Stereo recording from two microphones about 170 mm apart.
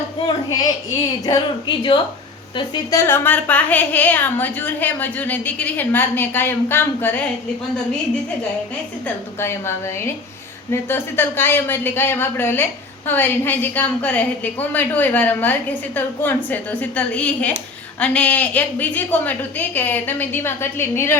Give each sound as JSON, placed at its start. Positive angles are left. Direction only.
{"t": 0.3, "sound": "a woman's voice", "side_deg": 20}
{"t": 9.0, "sound": "speech", "side_deg": 15}